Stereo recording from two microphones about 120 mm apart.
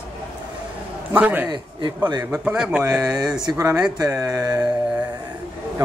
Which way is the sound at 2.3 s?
10° right (ahead or behind).